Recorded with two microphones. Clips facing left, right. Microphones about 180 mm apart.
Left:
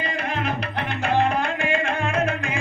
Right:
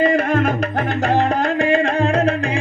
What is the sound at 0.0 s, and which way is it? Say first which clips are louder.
Music: right 11 dB; 50° right (ahead or behind).